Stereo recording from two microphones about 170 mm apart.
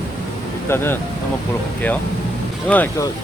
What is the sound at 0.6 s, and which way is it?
Speech, 15° left (ahead or behind).